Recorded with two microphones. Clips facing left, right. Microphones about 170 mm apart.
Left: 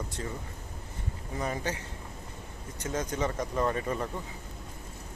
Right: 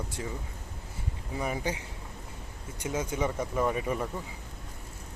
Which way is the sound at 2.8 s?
10° right (ahead or behind).